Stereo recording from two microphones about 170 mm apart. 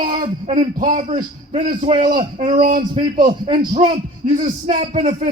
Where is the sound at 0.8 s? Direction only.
50° right (ahead or behind).